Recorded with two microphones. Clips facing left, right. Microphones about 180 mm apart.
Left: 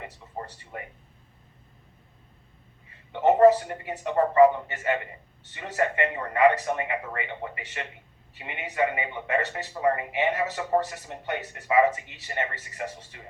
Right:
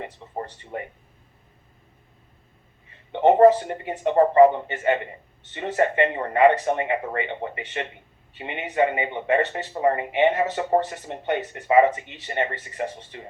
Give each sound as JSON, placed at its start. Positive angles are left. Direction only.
{"t": 0.0, "sound": "speech", "side_deg": -30}
{"t": 3.1, "sound": "speech", "side_deg": -25}